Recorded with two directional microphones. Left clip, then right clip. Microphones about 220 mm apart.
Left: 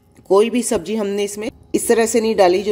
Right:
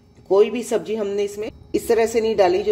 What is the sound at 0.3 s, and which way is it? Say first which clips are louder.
A woman's voice: left 2 dB; 30° left (ahead or behind).